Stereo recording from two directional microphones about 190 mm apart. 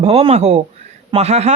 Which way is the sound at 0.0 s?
35° right (ahead or behind).